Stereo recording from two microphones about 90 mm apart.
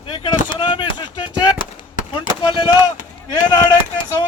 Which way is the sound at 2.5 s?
65° left (ahead or behind).